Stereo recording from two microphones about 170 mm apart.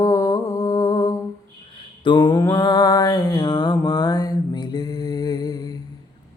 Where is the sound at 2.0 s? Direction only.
25° left (ahead or behind).